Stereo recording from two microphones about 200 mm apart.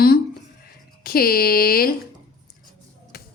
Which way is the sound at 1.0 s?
50° left (ahead or behind).